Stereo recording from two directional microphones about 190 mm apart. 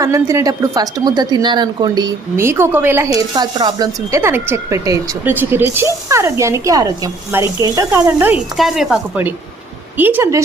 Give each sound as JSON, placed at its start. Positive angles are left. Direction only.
{"t": 0.0, "sound": "speech", "side_deg": -15}
{"t": 8.5, "sound": "speech", "side_deg": 0}